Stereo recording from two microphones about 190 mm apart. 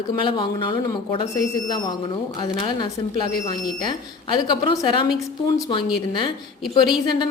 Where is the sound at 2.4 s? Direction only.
25° left (ahead or behind).